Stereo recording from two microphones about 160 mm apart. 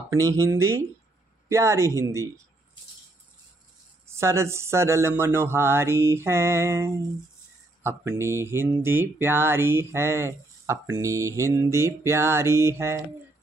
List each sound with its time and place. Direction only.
0.1 s mantra: 20° right (ahead or behind)
4.1 s mantra: 15° right (ahead or behind)